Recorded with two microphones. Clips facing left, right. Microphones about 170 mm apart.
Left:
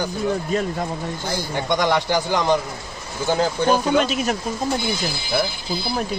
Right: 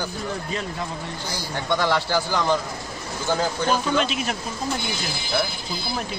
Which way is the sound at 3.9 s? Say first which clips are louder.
Left 4 dB; 45° left (ahead or behind).